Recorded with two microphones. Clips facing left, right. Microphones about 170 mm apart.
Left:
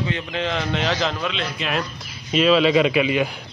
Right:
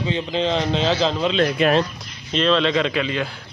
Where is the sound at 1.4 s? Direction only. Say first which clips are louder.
Right 10 dB; 55° right (ahead or behind).